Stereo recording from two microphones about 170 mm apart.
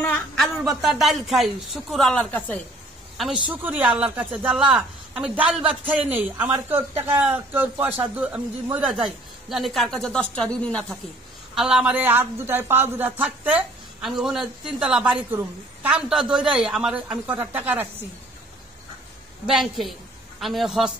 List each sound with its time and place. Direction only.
0.0 s a sound: 10° left (ahead or behind)
0.7 s speech: centre (ahead or behind)
3.4 s a woman's voice: 10° right (ahead or behind)
19.4 s a woman's voice: centre (ahead or behind)